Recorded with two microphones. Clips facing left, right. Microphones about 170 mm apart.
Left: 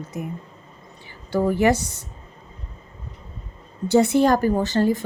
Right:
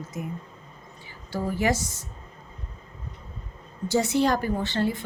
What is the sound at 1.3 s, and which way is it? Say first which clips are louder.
Speech: left 7 dB; 60° left (ahead or behind).